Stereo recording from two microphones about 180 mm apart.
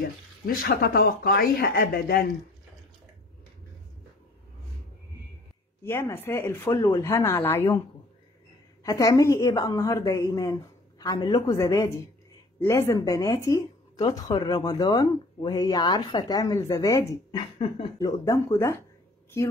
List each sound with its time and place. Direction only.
0.5 s speech: 55° left (ahead or behind)
5.9 s speech: 15° left (ahead or behind)
8.8 s speech: 20° left (ahead or behind)
17.4 s speech: 30° left (ahead or behind)